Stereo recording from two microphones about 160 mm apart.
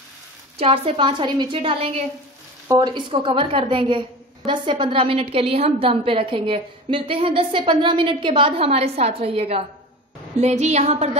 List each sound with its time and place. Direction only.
0.6 s a woman's voice: 35° right (ahead or behind)